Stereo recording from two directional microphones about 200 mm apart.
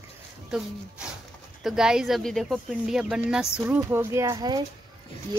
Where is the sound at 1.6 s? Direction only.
5° right (ahead or behind).